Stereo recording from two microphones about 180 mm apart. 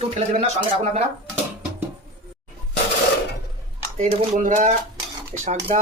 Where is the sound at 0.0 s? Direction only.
35° right (ahead or behind).